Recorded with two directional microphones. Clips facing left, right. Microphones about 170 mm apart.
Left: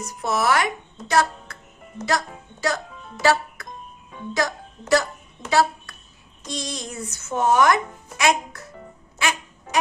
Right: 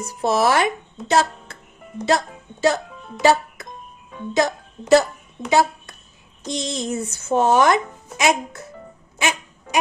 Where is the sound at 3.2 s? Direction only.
20° right (ahead or behind).